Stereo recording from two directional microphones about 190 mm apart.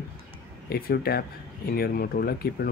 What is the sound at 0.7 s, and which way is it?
Speech, 55° left (ahead or behind).